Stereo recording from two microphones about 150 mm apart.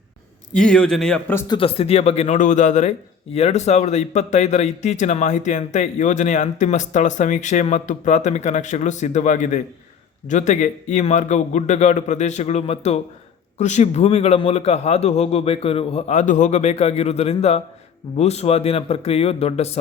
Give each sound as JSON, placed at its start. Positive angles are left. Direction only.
{"t": 0.5, "sound": "a man's voice", "side_deg": 5}
{"t": 1.5, "sound": "speech", "side_deg": 35}